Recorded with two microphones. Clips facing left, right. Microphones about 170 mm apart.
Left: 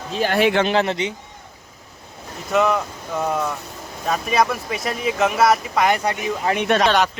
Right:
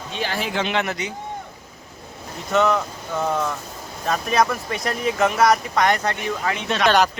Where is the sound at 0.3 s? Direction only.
65° left (ahead or behind).